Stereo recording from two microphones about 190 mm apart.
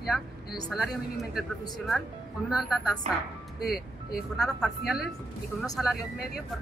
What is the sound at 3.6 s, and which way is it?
Speech, 55° left (ahead or behind).